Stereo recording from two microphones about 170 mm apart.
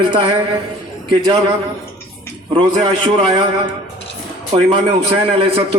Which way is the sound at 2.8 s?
30° right (ahead or behind).